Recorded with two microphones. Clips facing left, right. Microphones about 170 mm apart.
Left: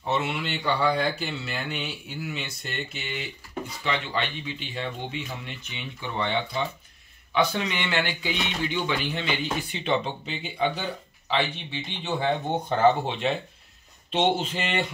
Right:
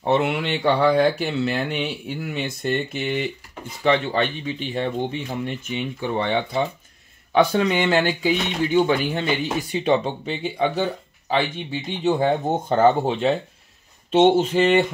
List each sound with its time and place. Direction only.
0.0 s speech: 55° right (ahead or behind)
5.4 s speech: 45° right (ahead or behind)